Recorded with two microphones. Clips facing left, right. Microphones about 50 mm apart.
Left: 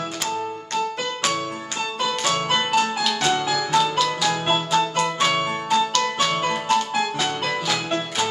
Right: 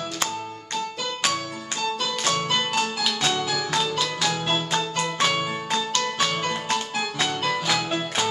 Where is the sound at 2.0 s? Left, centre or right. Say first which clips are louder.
Left 6 dB; centre.